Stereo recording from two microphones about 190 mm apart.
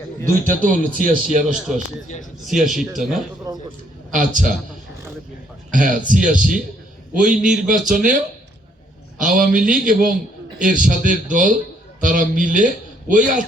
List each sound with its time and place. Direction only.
0.4 s speech: 45° right (ahead or behind)
1.5 s a man's voice: centre (ahead or behind)
3.5 s a man's voice: 20° right (ahead or behind)
4.1 s speech: 40° right (ahead or behind)
5.7 s a man's voice: 45° right (ahead or behind)